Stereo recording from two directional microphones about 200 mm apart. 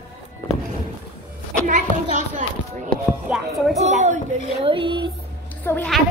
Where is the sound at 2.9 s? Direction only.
Centre (ahead or behind).